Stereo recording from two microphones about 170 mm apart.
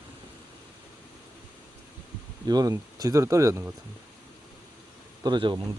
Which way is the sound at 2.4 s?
25° right (ahead or behind).